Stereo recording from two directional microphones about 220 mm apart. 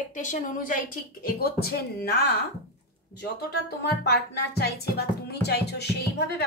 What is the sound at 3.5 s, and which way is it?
Speech, 50° left (ahead or behind).